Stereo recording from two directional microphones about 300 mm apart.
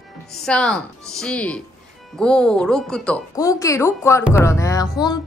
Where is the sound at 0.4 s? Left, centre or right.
Centre.